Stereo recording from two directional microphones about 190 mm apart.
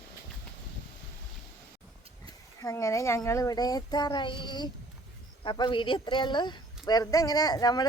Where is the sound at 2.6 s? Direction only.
15° left (ahead or behind).